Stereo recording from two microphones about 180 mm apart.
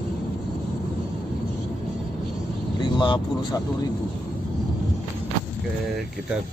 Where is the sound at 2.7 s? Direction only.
25° left (ahead or behind).